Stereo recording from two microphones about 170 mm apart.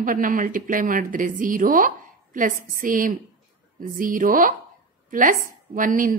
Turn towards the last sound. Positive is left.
turn(degrees=-50)  # may be behind; listen again after turning